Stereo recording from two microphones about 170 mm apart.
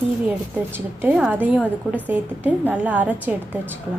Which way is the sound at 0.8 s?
15° right (ahead or behind).